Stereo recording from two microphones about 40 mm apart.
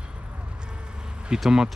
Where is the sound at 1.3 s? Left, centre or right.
Right.